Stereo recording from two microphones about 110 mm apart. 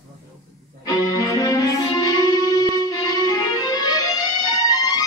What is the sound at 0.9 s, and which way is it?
Music, 35° left (ahead or behind).